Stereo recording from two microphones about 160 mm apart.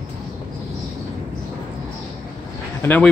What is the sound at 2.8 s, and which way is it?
Speech, 10° left (ahead or behind).